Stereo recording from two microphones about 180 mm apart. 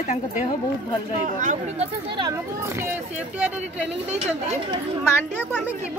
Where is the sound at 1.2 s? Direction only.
45° right (ahead or behind).